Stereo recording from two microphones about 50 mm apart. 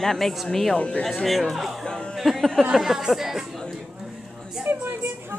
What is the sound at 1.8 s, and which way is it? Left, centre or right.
Music, centre.